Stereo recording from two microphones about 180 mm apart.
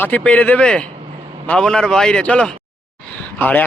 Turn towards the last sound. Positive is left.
turn(degrees=10)  # may be behind; listen again after turning